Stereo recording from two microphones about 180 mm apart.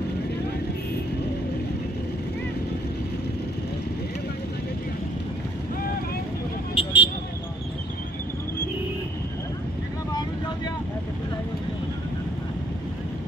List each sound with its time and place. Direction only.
6.7 s vehicle: 30° left (ahead or behind)